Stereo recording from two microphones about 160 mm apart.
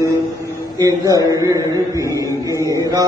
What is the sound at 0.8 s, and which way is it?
A man's voice, 20° right (ahead or behind).